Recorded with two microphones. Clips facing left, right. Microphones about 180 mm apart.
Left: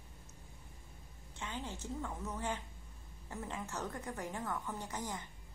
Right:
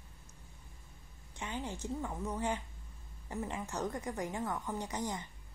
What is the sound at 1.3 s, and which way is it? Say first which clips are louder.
A woman's voice: right 3 dB; 15° right (ahead or behind).